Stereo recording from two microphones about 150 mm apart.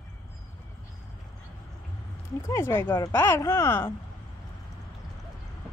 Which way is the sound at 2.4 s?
20° left (ahead or behind).